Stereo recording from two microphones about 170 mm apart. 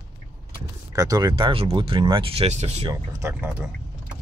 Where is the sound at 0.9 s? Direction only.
20° right (ahead or behind); by 2.9 s 40° right (ahead or behind).